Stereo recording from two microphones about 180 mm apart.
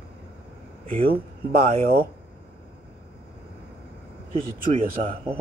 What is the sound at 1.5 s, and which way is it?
Speech, 55° right (ahead or behind).